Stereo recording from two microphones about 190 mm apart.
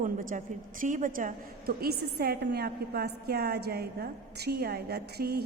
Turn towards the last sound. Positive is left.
turn(degrees=-55)  # may be behind; listen again after turning